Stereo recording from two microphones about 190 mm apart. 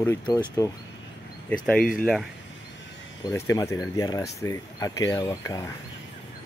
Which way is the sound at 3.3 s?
15° left (ahead or behind).